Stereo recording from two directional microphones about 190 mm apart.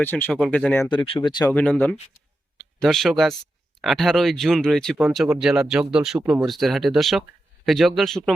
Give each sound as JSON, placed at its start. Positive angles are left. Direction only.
{"t": 0.0, "sound": "speech", "side_deg": 10}
{"t": 0.9, "sound": "speech", "side_deg": 25}
{"t": 1.5, "sound": "speech", "side_deg": 5}